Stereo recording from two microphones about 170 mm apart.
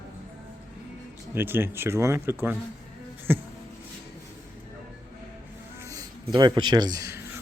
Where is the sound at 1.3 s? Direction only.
10° right (ahead or behind).